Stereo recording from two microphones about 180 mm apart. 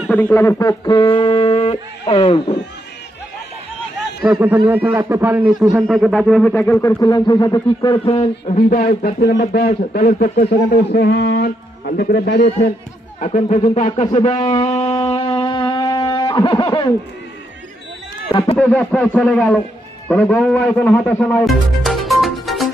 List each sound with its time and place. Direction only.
0.1 s speech: 10° left (ahead or behind); by 2.6 s 30° left (ahead or behind)
4.4 s a man's voice: 10° right (ahead or behind); by 8.5 s 30° left (ahead or behind)
8.5 s speech: 45° left (ahead or behind)
10.7 s a man's voice: 60° left (ahead or behind)
13.1 s speech: 40° left (ahead or behind)
14.3 s speech: 20° left (ahead or behind)
14.6 s music: 35° left (ahead or behind)
18.3 s speech: 30° left (ahead or behind)
18.5 s a man's voice: 5° left (ahead or behind)